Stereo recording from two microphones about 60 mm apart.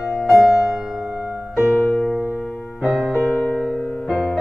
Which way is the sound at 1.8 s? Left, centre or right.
Left.